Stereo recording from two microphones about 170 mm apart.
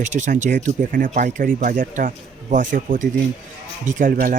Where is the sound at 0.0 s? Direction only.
50° right (ahead or behind).